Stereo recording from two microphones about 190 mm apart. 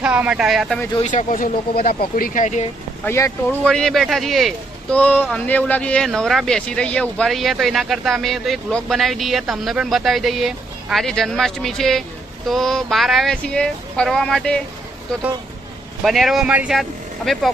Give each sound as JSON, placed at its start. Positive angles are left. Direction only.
{"t": 0.0, "sound": "speech", "side_deg": -5}
{"t": 1.0, "sound": "speech", "side_deg": 40}
{"t": 3.1, "sound": "speech", "side_deg": 15}
{"t": 16.0, "sound": "speech", "side_deg": 0}